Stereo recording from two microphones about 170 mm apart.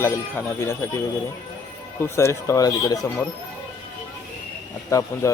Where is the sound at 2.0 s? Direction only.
15° left (ahead or behind).